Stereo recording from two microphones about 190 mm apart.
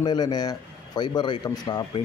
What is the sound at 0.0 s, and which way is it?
Speech, 20° left (ahead or behind).